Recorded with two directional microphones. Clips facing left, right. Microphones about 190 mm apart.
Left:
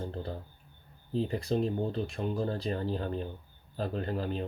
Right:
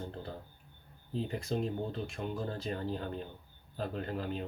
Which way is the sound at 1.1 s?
35° left (ahead or behind).